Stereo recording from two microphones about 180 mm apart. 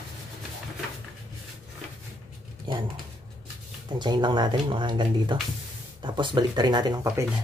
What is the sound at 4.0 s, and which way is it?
Speech, 25° right (ahead or behind).